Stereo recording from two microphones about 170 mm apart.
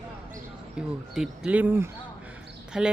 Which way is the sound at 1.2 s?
5° right (ahead or behind).